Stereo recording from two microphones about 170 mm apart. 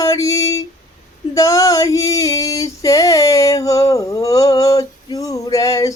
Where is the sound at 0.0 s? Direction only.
20° left (ahead or behind).